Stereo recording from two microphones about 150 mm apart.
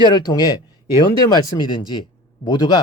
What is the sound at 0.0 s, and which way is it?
Speech, 25° left (ahead or behind).